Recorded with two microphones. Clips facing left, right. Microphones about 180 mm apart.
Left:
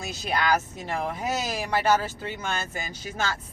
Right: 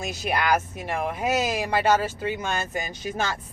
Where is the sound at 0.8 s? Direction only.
10° right (ahead or behind).